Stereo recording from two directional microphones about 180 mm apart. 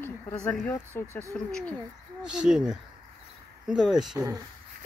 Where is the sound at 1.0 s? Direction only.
10° left (ahead or behind).